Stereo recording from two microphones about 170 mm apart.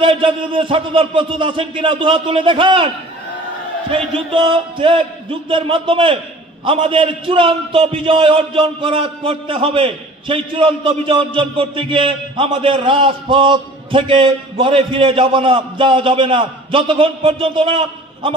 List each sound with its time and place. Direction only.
0.0 s a man's voice: 30° right (ahead or behind)
3.9 s a man's voice: 30° right (ahead or behind)